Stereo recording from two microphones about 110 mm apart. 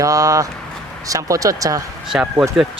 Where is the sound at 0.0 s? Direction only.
30° right (ahead or behind).